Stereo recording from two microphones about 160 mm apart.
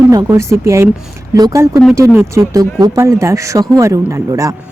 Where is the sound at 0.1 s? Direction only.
20° right (ahead or behind).